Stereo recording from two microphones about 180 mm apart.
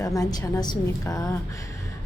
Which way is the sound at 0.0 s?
20° left (ahead or behind).